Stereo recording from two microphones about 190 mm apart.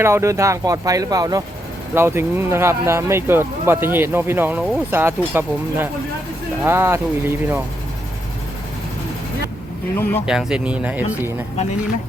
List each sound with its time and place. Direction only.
0.0 s speech: 15° right (ahead or behind)
10.2 s speech: 5° right (ahead or behind)